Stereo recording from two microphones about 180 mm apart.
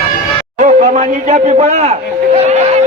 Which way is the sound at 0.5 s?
40° right (ahead or behind).